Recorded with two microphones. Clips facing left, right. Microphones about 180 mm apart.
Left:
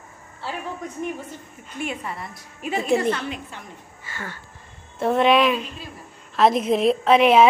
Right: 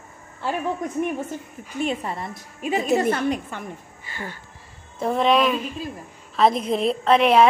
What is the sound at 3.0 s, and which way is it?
Speech, 45° right (ahead or behind).